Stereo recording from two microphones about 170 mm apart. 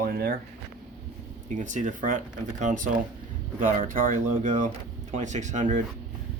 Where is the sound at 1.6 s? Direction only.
45° right (ahead or behind).